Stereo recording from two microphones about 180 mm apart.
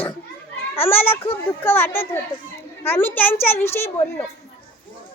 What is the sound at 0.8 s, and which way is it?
A child's voice, 10° left (ahead or behind).